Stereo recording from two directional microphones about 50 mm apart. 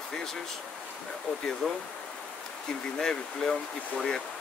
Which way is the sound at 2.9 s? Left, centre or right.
Centre.